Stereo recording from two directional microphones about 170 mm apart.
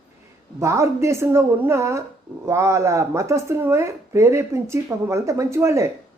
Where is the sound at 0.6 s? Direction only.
15° right (ahead or behind).